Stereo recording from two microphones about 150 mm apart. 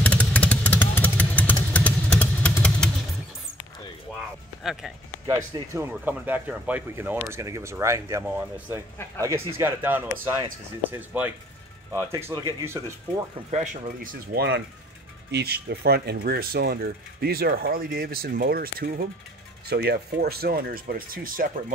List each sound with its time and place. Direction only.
0.0 s vehicle: 10° left (ahead or behind)
4.6 s speech: centre (ahead or behind)
5.2 s speech: 20° right (ahead or behind)
13.5 s speech: 45° right (ahead or behind)
13.8 s speech: 80° right
15.3 s speech: 90° right; by 21.7 s 70° right (ahead or behind)